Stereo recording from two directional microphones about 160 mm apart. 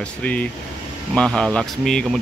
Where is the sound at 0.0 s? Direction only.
10° left (ahead or behind).